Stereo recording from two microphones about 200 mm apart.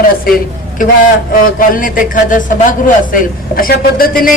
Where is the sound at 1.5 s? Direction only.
45° left (ahead or behind).